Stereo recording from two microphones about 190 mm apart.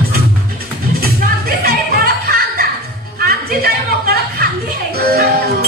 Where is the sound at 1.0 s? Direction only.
50° right (ahead or behind).